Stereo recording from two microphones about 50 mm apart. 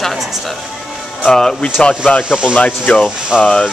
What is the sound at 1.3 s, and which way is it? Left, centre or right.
Speech, centre.